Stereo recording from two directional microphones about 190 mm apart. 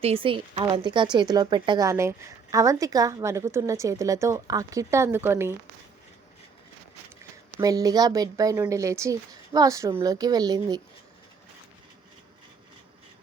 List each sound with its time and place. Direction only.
0.0 s a woman's voice: 30° right (ahead or behind); by 5.5 s 15° right (ahead or behind)
7.6 s a woman's voice: 20° right (ahead or behind)